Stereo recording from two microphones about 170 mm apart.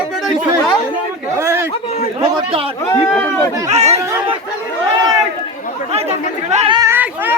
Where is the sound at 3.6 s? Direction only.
40° right (ahead or behind).